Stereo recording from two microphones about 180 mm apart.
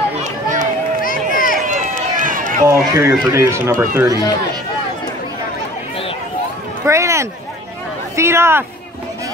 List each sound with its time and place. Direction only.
0.2 s run: 45° right (ahead or behind)
1.0 s a sound: 50° left (ahead or behind)
1.7 s run: 50° right (ahead or behind)
2.6 s speech: 15° right (ahead or behind)
6.9 s a sound: 15° right (ahead or behind)
8.2 s speech: 15° right (ahead or behind)